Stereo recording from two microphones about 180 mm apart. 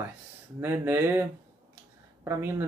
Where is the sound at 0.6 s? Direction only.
15° right (ahead or behind).